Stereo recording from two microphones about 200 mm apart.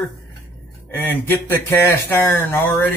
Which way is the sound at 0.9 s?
10° left (ahead or behind).